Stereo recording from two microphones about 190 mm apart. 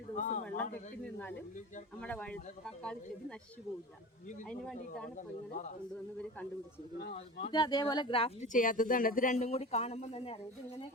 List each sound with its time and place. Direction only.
0.2 s speech: 40° left (ahead or behind)
0.4 s speech: 5° left (ahead or behind)
7.1 s speech: 25° left (ahead or behind)
8.5 s speech: 45° left (ahead or behind)